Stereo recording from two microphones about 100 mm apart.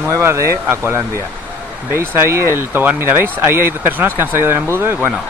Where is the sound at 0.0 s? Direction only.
25° right (ahead or behind).